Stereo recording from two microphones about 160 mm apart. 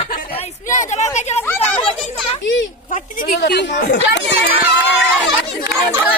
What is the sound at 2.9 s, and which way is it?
Speech, 55° left (ahead or behind).